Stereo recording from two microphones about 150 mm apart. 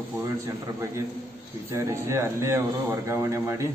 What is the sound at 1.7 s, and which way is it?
Speech, 20° right (ahead or behind).